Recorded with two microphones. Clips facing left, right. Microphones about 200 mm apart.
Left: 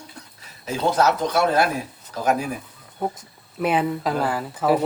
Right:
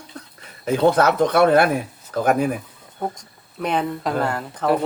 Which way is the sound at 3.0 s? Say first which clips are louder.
Left 1 dB; 5° left (ahead or behind).